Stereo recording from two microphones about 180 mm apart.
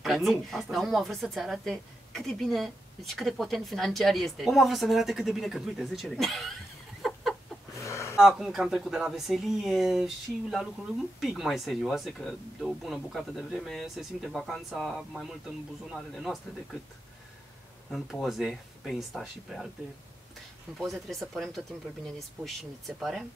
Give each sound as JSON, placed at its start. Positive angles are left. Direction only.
{"t": 0.0, "sound": "speech", "side_deg": 0}
{"t": 7.0, "sound": "a sound", "side_deg": 0}
{"t": 7.8, "sound": "a sound", "side_deg": 15}
{"t": 8.2, "sound": "speech", "side_deg": 0}
{"t": 17.9, "sound": "speech", "side_deg": 0}
{"t": 20.7, "sound": "speech", "side_deg": 0}